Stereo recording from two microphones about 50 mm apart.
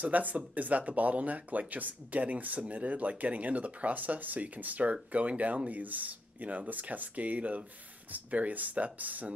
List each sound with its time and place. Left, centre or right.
0.0 s speech: right